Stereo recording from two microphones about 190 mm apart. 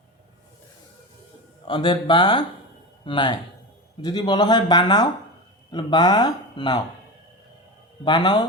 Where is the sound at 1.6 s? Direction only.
25° left (ahead or behind).